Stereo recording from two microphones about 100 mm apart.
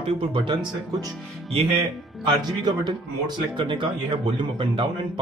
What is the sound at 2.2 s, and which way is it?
Speech, 45° right (ahead or behind).